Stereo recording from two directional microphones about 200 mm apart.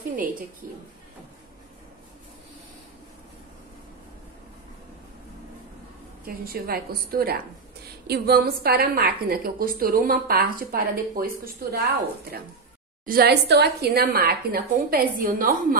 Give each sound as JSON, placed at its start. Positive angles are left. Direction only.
{"t": 6.2, "sound": "a woman's voice", "side_deg": -50}
{"t": 13.0, "sound": "a woman's voice", "side_deg": -50}